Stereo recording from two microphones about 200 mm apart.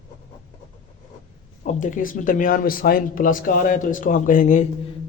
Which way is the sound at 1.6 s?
40° left (ahead or behind).